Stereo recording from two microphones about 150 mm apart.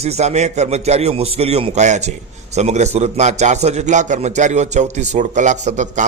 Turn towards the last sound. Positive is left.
turn(degrees=-55)  # may be behind; listen again after turning